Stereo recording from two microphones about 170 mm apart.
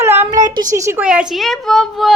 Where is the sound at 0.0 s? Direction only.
15° right (ahead or behind).